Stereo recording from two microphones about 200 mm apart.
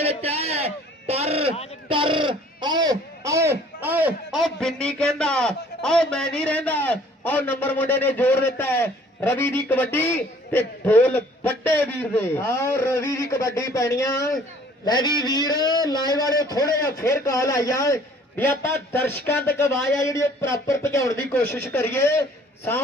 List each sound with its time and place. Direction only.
0.0 s a sound: 30° right (ahead or behind)
1.9 s a man's voice: 25° right (ahead or behind); by 15.8 s 20° left (ahead or behind)
16.0 s a man's voice: 20° right (ahead or behind)
16.9 s a man's voice: 15° left (ahead or behind)